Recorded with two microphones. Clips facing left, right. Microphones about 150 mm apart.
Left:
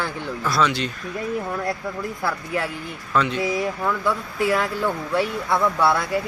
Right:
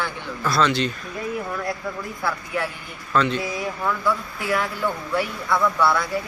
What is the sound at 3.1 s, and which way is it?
Speech, 5° left (ahead or behind).